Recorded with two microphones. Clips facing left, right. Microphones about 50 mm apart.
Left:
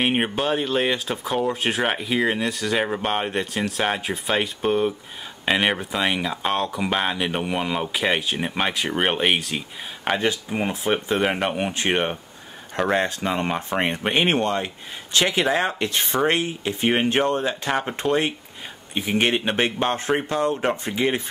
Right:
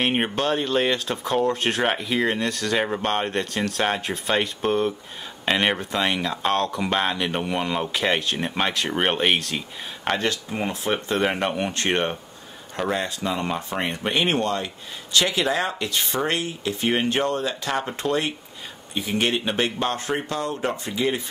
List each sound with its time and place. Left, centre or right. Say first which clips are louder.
0.0 s speech: left 1 dB; centre
12.9 s speech: left 4 dB; left